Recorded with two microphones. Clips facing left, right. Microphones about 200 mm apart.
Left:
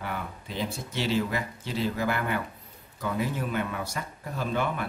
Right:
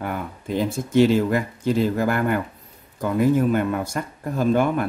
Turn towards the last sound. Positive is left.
turn(degrees=-45)  # may be behind; listen again after turning